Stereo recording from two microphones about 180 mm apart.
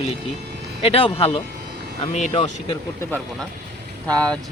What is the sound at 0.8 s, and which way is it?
Speech, 30° left (ahead or behind).